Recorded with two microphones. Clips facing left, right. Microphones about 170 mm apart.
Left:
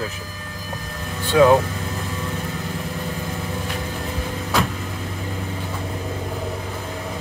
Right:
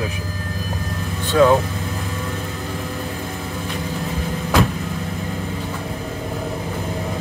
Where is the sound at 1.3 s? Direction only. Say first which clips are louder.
Even; 10° left (ahead or behind).